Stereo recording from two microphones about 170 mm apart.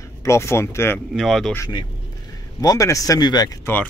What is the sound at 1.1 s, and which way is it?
Speech, centre (ahead or behind).